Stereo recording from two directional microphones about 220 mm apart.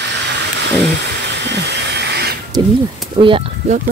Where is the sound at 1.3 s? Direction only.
50° right (ahead or behind).